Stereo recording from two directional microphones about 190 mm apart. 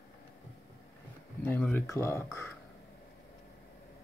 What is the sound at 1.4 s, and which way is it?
Speech, 10° left (ahead or behind).